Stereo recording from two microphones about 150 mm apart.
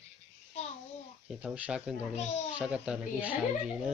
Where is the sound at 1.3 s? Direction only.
10° right (ahead or behind).